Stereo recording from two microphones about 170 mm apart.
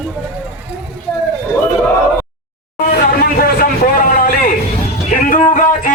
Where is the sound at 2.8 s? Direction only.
60° left (ahead or behind).